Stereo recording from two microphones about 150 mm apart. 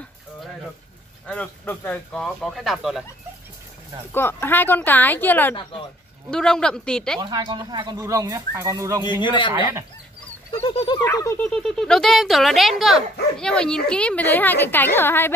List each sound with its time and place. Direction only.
1.2 s speech: 10° left (ahead or behind)
4.1 s speech: 15° left (ahead or behind)
5.6 s speech: 35° left (ahead or behind)
6.3 s speech: 5° left (ahead or behind)
7.2 s speech: 25° right (ahead or behind)
9.0 s speech: 30° left (ahead or behind)
11.1 s speech: 15° left (ahead or behind)
11.4 s speech: 5° left (ahead or behind)